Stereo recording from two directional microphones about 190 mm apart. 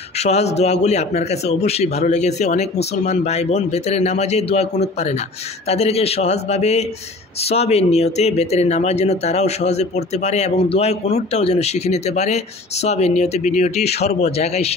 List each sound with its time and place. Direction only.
0.2 s speech: 35° left (ahead or behind)